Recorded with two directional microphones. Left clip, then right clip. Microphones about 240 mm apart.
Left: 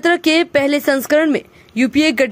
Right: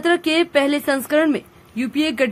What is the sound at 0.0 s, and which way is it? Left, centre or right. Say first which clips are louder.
Speech: left 4 dB; left.